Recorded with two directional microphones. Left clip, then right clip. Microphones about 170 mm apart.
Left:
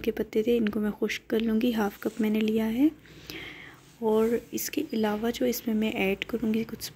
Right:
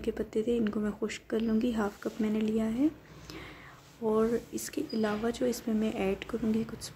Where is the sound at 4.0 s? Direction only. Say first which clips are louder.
Left 4 dB; 15° left (ahead or behind).